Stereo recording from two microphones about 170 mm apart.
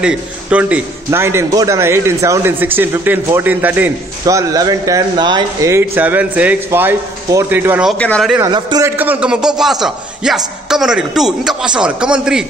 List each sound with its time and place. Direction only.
0.0 s a man's voice: 5° right (ahead or behind)
8.0 s a man's voice: 5° left (ahead or behind)
8.4 s a man's voice: 25° right (ahead or behind)
8.8 s a man's voice: 10° right (ahead or behind)